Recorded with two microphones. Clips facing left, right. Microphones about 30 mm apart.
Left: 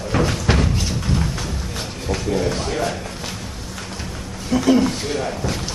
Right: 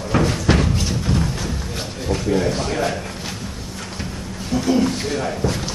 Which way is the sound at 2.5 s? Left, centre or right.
Centre.